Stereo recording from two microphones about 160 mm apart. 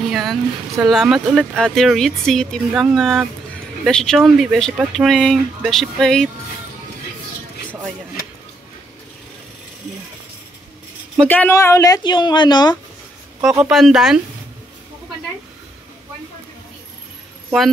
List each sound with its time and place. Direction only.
0.1 s speech: centre (ahead or behind)
11.1 s speech: 10° left (ahead or behind); by 12.7 s 25° left (ahead or behind)
13.6 s speech: centre (ahead or behind)